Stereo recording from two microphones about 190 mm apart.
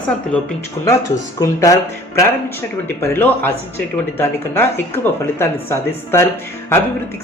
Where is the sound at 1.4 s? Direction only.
15° left (ahead or behind).